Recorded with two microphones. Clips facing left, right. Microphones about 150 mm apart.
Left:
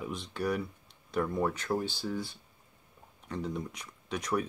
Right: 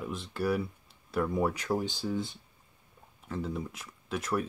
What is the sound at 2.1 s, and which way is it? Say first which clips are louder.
Speech: right 3 dB; 20° right (ahead or behind).